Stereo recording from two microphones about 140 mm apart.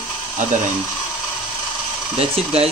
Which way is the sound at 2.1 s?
45° right (ahead or behind).